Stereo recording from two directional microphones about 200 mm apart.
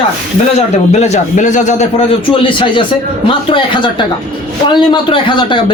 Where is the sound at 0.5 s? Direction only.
35° left (ahead or behind).